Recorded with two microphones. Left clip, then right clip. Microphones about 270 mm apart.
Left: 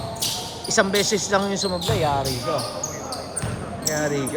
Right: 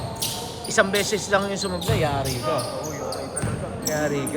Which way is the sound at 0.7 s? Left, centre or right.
Left.